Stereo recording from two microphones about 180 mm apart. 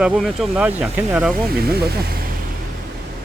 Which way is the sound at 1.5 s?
60° right (ahead or behind).